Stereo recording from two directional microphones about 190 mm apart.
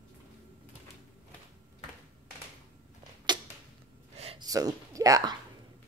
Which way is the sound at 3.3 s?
25° right (ahead or behind).